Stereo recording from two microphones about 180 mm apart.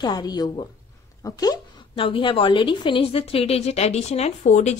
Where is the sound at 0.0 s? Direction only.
20° left (ahead or behind).